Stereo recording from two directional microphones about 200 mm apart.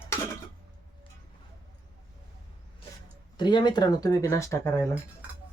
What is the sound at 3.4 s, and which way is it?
Speech, 20° left (ahead or behind).